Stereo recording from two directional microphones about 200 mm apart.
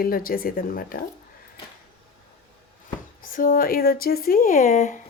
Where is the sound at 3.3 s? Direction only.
45° left (ahead or behind).